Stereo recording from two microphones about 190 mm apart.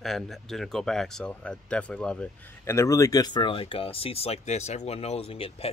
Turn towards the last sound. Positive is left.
turn(degrees=30)  # may be behind; listen again after turning